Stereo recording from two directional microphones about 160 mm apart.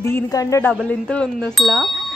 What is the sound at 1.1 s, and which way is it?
Speech, 5° left (ahead or behind).